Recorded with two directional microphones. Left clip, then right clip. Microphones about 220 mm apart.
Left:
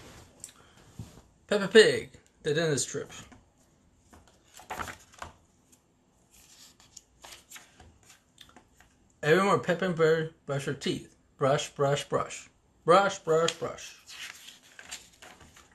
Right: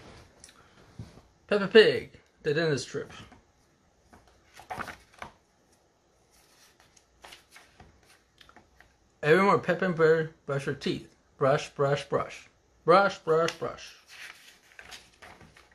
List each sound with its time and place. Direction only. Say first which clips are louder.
1.4 s speech: right 1 dB; 10° right (ahead or behind)
8.7 s speech: right 3 dB; 15° right (ahead or behind)
14.1 s a sound: left 3 dB; 5° left (ahead or behind)